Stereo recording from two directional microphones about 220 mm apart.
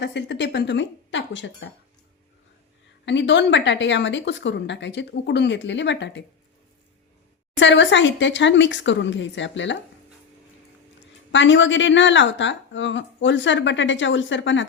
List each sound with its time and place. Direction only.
0.0 s speech: 55° left (ahead or behind)
3.1 s speech: 55° left (ahead or behind)
7.5 s a woman's voice: 55° left (ahead or behind)
11.3 s a woman's voice: 55° left (ahead or behind)